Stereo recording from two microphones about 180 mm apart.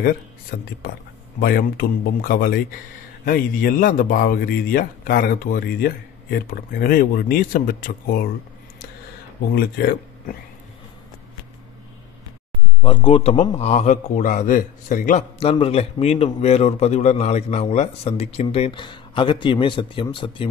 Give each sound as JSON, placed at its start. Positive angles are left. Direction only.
{"t": 0.0, "sound": "speech", "side_deg": 60}
{"t": 9.6, "sound": "speech", "side_deg": 60}
{"t": 12.8, "sound": "a man's voice", "side_deg": 30}